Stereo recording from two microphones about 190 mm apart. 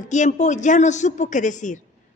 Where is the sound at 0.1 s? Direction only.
40° left (ahead or behind).